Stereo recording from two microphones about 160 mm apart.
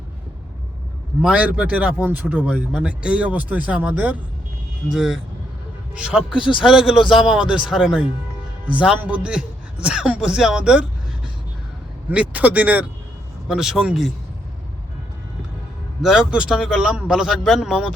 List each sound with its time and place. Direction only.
1.2 s a man's voice: 10° right (ahead or behind)
7.0 s a man's voice: 30° left (ahead or behind)
7.3 s a man's voice: 5° right (ahead or behind)
12.0 s a man's voice: 10° right (ahead or behind)
16.0 s a man's voice: 5° right (ahead or behind)